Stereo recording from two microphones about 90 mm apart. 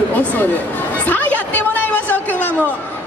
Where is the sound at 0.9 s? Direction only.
20° left (ahead or behind).